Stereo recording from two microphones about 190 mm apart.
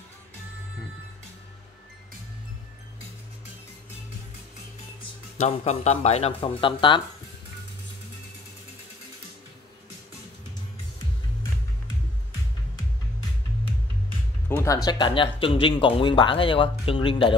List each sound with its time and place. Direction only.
5.4 s speech: 35° left (ahead or behind)
14.5 s speech: 15° left (ahead or behind)